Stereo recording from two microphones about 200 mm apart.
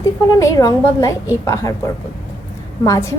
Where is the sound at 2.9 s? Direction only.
15° left (ahead or behind).